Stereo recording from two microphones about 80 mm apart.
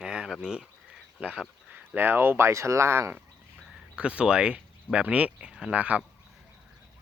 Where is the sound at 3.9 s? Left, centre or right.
Centre.